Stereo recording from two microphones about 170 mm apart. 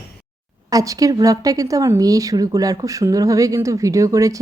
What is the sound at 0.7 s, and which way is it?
Speech, 20° right (ahead or behind).